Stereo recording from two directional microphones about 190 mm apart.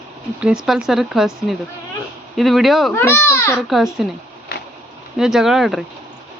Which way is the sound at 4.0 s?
Centre (ahead or behind).